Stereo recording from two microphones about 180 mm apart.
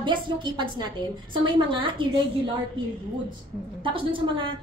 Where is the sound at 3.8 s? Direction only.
30° right (ahead or behind).